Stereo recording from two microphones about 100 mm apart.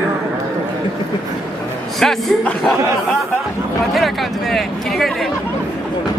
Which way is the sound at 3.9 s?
Centre (ahead or behind).